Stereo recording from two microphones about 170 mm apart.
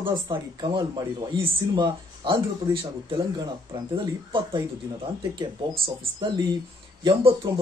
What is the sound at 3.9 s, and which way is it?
A man's voice, 30° right (ahead or behind).